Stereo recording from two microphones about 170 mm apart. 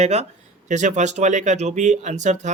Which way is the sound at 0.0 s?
40° right (ahead or behind).